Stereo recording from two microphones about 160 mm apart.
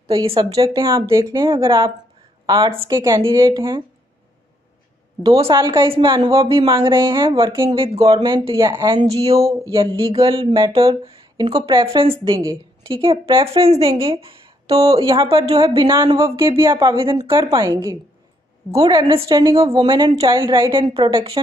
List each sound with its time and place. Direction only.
0.1 s speech: 35° right (ahead or behind)
3.4 s speech: 30° right (ahead or behind)
5.2 s speech: 25° right (ahead or behind)
14.0 s a sound: 35° right (ahead or behind)
14.9 s speech: 30° right (ahead or behind)
16.4 s speech: 30° right (ahead or behind)